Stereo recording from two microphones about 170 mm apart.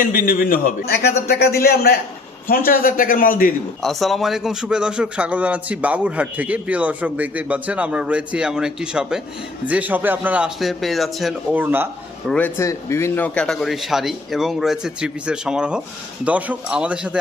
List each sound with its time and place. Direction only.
0.0 s a man's voice: 50° left (ahead or behind)
3.8 s a man's voice: centre (ahead or behind)
11.5 s a man's voice: 10° right (ahead or behind)
12.3 s a man's voice: 15° left (ahead or behind); by 17.2 s 5° right (ahead or behind)